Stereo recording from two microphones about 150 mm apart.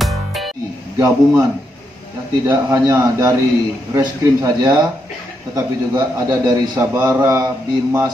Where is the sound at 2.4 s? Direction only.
20° right (ahead or behind).